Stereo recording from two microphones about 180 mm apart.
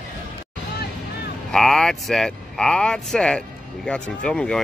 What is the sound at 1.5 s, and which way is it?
Speech, centre (ahead or behind).